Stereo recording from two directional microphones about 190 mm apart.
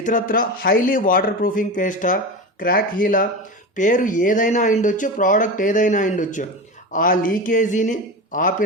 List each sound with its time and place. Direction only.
0.0 s speech: 45° left (ahead or behind)